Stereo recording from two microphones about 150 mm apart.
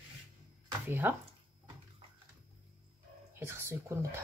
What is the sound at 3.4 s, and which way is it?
Speech, 15° right (ahead or behind).